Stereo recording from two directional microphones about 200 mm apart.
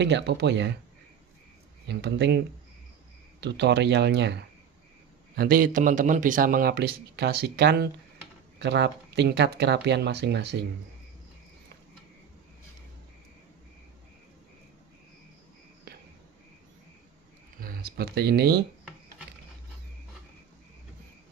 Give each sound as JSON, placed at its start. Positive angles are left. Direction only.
{"t": 0.0, "sound": "speech", "side_deg": -60}
{"t": 1.9, "sound": "speech", "side_deg": -60}
{"t": 3.4, "sound": "speech", "side_deg": -60}
{"t": 5.4, "sound": "speech", "side_deg": -45}
{"t": 17.6, "sound": "speech", "side_deg": -50}